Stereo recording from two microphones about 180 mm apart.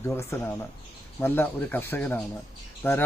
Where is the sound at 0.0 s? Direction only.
15° left (ahead or behind).